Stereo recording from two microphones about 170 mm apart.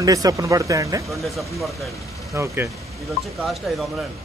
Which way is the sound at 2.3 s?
15° right (ahead or behind).